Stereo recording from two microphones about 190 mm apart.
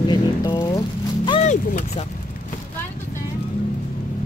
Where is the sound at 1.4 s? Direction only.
40° left (ahead or behind).